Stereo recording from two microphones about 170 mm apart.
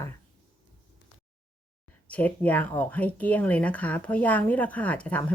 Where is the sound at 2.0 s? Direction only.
10° left (ahead or behind).